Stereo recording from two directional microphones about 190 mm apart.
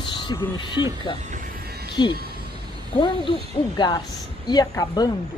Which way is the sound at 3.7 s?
20° left (ahead or behind).